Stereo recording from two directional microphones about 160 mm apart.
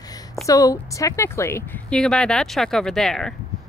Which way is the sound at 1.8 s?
5° left (ahead or behind).